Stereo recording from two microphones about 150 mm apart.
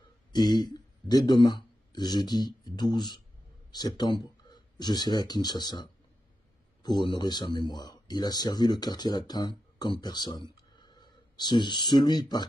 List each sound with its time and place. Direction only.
0.3 s speech: 25° left (ahead or behind)